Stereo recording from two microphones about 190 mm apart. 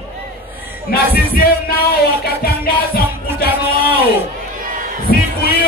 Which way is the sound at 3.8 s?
55° left (ahead or behind).